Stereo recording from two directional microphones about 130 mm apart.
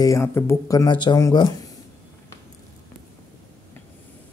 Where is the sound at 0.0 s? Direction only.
25° left (ahead or behind).